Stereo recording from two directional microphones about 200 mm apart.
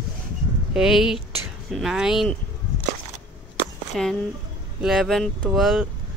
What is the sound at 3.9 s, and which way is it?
Speech, centre (ahead or behind).